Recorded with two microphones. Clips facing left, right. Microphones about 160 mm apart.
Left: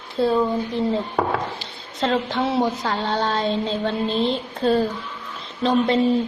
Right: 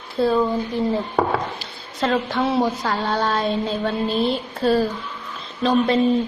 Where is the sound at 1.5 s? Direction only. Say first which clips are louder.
Right 1 dB; 25° left (ahead or behind).